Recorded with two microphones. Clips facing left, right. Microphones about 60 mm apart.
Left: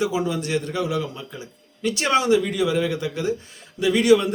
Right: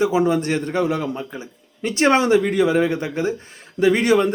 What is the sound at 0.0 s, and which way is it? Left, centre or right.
A man's voice, right.